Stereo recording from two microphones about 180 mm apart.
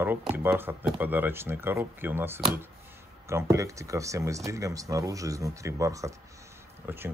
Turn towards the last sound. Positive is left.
turn(degrees=-10)  # may be behind; listen again after turning